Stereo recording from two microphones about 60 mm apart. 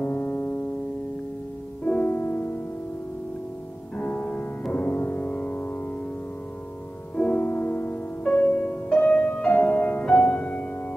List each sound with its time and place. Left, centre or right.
0.0 s music: left
2.0 s music: left
3.9 s music: left
7.2 s music: left
7.4 s music: left